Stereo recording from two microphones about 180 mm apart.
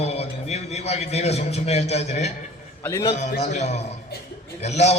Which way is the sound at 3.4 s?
40° left (ahead or behind).